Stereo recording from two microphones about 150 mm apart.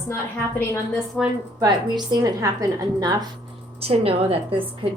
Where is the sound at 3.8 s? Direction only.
40° right (ahead or behind).